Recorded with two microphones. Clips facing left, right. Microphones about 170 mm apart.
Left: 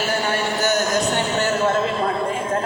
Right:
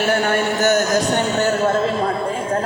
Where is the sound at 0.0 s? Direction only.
60° right (ahead or behind).